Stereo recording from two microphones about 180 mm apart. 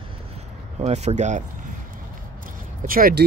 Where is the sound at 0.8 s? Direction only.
40° right (ahead or behind).